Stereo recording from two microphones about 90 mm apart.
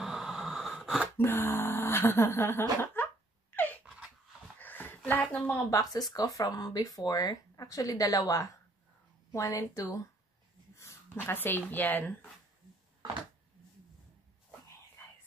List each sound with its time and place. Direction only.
0.0 s a sound: 5° right (ahead or behind)
1.1 s speech: 25° left (ahead or behind)
2.8 s cough: 20° left (ahead or behind)
3.5 s gasp: 20° left (ahead or behind)
4.6 s a sound: 20° left (ahead or behind)
5.7 s a woman's voice: 40° left (ahead or behind)
11.1 s speech: 20° left (ahead or behind)